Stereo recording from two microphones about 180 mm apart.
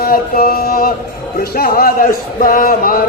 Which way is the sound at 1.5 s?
55° left (ahead or behind).